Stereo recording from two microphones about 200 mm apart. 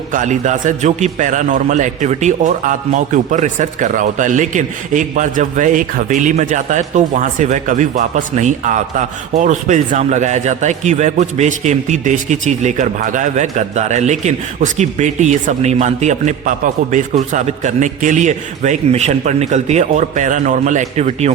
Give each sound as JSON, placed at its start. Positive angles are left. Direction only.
{"t": 0.1, "sound": "a man's voice", "side_deg": -40}